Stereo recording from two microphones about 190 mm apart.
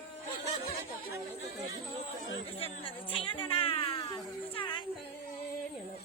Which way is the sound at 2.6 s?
30° left (ahead or behind).